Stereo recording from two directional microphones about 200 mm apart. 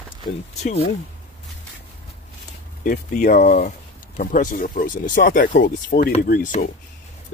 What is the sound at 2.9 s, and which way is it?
Speech, 40° left (ahead or behind).